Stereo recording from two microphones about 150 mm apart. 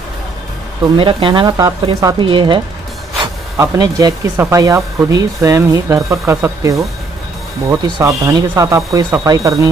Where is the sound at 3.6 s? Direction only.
25° right (ahead or behind).